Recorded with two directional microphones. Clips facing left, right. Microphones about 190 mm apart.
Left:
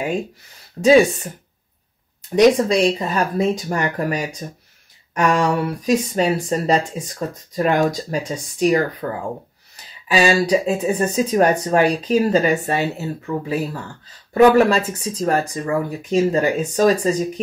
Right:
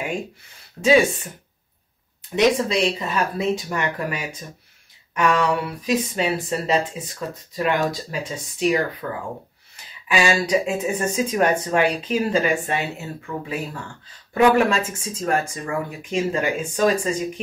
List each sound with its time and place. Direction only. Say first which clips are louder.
0.8 s speech: left 4 dB; 40° left (ahead or behind)
10.0 s speech: left 4 dB; 35° left (ahead or behind)